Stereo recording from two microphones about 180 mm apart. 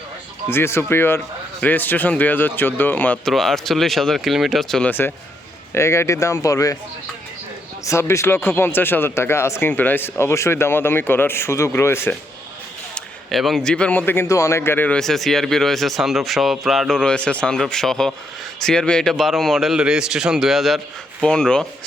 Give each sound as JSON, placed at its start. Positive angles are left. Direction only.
{"t": 0.5, "sound": "speech", "side_deg": 15}
{"t": 7.9, "sound": "speech", "side_deg": 15}
{"t": 12.9, "sound": "a man's voice", "side_deg": 0}